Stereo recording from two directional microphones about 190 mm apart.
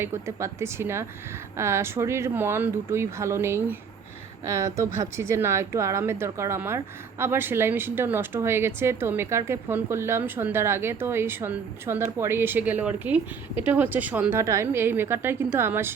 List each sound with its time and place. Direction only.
0.0 s speech: 15° right (ahead or behind)